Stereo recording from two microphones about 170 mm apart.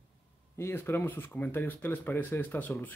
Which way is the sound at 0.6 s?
15° left (ahead or behind).